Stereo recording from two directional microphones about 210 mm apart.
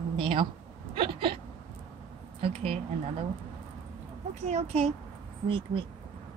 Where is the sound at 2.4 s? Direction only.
30° right (ahead or behind).